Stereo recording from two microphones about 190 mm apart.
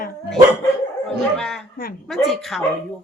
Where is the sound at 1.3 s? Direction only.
5° left (ahead or behind).